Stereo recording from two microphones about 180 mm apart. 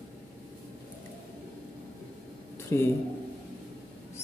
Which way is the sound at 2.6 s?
15° left (ahead or behind).